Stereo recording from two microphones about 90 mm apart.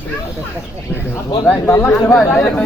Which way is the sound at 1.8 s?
20° left (ahead or behind).